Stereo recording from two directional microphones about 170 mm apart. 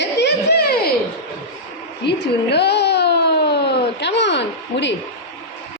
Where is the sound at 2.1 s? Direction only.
80° left.